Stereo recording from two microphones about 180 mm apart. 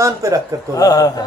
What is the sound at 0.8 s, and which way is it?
Speech, 20° left (ahead or behind).